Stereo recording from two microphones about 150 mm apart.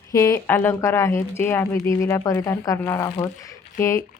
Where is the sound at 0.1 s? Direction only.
20° left (ahead or behind).